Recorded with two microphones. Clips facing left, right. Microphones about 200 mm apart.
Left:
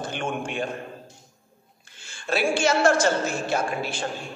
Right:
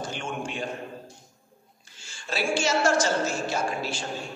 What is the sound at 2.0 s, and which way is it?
A man's voice, 55° left (ahead or behind).